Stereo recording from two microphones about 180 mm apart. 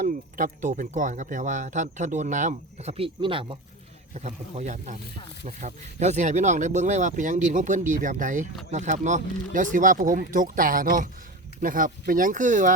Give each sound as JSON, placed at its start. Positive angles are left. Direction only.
{"t": 0.0, "sound": "speech", "side_deg": -45}